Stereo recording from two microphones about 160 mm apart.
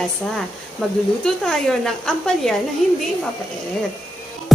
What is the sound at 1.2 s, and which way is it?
Speech, 5° left (ahead or behind).